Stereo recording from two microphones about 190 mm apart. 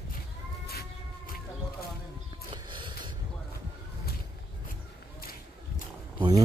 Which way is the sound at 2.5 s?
25° right (ahead or behind).